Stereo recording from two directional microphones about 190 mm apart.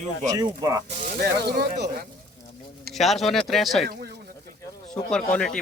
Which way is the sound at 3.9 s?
50° right (ahead or behind).